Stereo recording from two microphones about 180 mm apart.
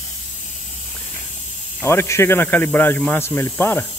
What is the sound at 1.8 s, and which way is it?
Speech, 15° left (ahead or behind).